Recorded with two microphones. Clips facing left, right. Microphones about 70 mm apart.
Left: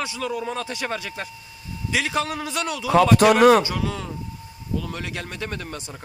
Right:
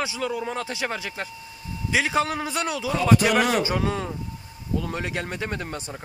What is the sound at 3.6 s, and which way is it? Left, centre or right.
A man's voice, right.